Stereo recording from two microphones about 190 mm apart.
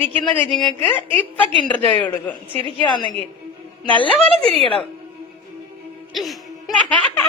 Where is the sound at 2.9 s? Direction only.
25° left (ahead or behind).